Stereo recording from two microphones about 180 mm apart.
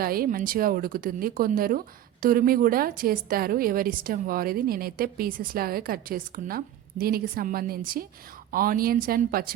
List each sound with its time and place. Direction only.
0.0 s a woman's voice: 55° right (ahead or behind)